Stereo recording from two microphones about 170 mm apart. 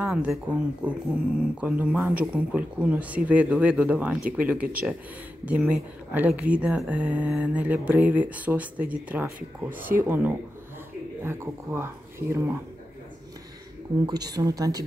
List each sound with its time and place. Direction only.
0.0 s speech: 5° right (ahead or behind)
14.0 s speech: 25° right (ahead or behind)